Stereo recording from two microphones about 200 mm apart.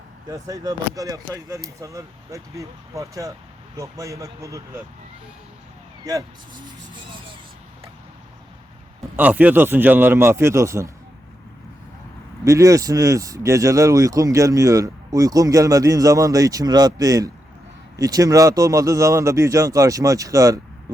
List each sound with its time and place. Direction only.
0.3 s speech: 15° right (ahead or behind)
9.1 s speech: 10° right (ahead or behind)
12.5 s speech: 15° right (ahead or behind)